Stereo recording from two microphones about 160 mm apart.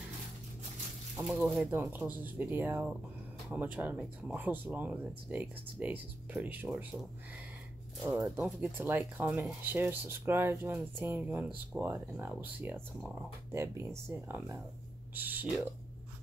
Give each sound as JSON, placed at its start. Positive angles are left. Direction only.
{"t": 1.2, "sound": "speech", "side_deg": -5}